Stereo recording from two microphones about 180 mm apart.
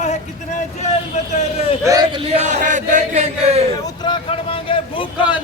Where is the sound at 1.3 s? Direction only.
35° left (ahead or behind).